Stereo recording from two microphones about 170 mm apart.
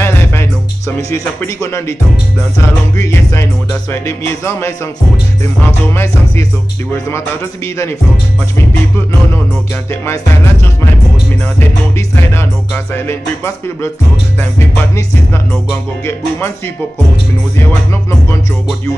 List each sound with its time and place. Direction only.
0.0 s music: 15° left (ahead or behind)
3.0 s music: 15° left (ahead or behind)
12.2 s music: 15° left (ahead or behind)
16.1 s music: 15° left (ahead or behind)